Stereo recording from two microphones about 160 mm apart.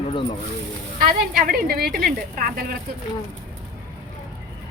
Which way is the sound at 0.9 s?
65° right (ahead or behind).